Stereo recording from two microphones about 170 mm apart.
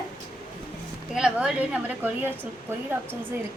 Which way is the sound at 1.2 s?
5° right (ahead or behind).